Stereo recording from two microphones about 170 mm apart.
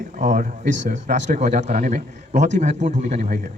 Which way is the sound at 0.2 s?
50° right (ahead or behind).